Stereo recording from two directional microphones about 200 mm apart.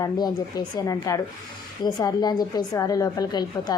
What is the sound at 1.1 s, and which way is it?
A woman's voice, 15° left (ahead or behind).